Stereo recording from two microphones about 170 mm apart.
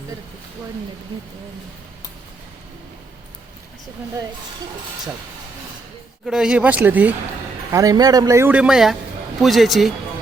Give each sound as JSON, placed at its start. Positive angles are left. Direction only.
{"t": 6.2, "sound": "speech", "side_deg": -5}
{"t": 7.7, "sound": "speech", "side_deg": -20}